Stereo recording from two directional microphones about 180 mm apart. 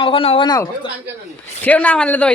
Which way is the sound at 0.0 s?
30° left (ahead or behind).